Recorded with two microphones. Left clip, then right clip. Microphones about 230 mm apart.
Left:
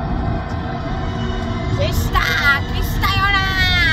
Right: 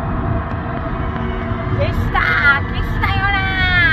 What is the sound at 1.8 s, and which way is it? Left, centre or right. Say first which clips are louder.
Child singing: right 1 dB; left.